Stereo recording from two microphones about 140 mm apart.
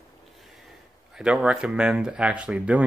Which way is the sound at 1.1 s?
5° right (ahead or behind).